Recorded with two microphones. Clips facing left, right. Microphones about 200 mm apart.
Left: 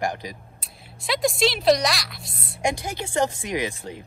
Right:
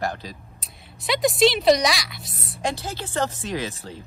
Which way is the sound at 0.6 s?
Centre (ahead or behind).